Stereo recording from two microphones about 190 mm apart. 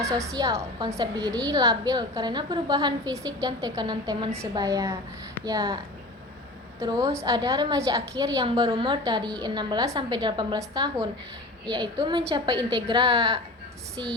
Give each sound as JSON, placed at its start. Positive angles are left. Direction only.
{"t": 0.0, "sound": "a woman's voice", "side_deg": -15}